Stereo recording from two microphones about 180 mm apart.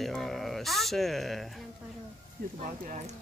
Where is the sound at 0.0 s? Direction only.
Centre (ahead or behind).